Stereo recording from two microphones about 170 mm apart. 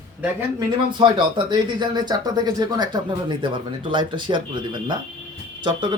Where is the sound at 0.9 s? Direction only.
25° right (ahead or behind).